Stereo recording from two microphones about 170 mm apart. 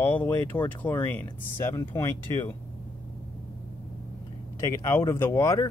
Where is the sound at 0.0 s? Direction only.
10° left (ahead or behind).